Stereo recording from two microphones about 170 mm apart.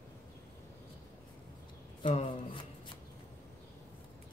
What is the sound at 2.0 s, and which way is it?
Rub, 35° left (ahead or behind).